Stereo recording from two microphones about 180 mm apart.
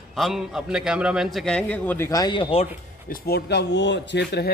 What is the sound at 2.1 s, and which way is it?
Speech, 25° left (ahead or behind).